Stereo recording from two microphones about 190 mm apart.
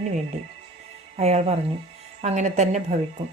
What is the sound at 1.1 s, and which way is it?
A woman's voice, 35° right (ahead or behind).